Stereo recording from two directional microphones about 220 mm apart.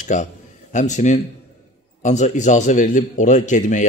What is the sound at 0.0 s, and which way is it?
A man's voice, 35° left (ahead or behind).